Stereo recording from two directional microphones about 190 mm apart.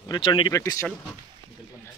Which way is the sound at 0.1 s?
25° left (ahead or behind).